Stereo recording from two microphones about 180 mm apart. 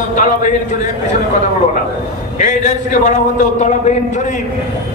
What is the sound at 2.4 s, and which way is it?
Speech, 45° left (ahead or behind).